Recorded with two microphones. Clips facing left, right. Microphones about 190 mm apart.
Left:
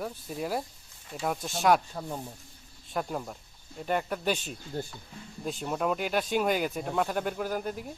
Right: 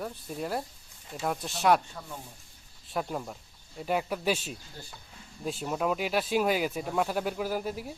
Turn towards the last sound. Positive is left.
turn(degrees=-5)  # may be behind; listen again after turning